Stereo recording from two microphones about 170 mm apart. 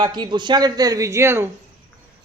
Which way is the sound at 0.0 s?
25° right (ahead or behind).